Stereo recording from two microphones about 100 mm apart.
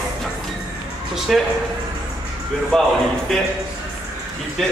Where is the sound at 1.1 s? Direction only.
5° right (ahead or behind).